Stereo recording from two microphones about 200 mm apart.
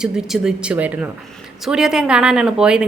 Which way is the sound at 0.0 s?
5° right (ahead or behind).